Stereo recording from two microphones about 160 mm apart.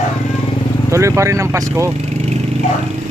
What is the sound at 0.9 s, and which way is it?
Speech, 20° right (ahead or behind).